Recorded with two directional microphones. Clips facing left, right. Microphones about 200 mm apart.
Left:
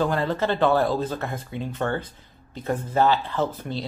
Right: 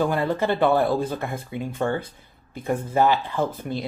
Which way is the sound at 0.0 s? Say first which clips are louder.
Right 1 dB; 10° right (ahead or behind).